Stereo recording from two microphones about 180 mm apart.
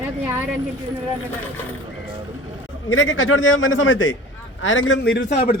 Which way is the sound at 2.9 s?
90° left.